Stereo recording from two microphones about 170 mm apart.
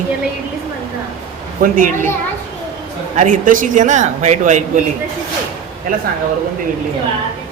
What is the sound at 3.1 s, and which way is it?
Speech, 50° right (ahead or behind).